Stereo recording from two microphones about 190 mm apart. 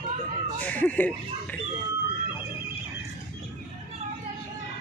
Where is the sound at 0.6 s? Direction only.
10° left (ahead or behind).